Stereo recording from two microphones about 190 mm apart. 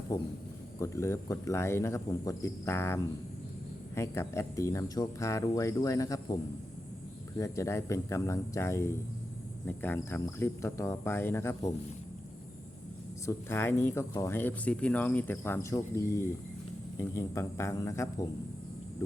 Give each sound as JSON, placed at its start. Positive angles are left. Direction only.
{"t": 0.1, "sound": "speech", "side_deg": 20}
{"t": 13.2, "sound": "speech", "side_deg": 10}